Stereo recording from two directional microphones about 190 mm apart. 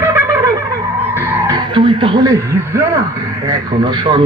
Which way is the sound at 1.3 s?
20° right (ahead or behind).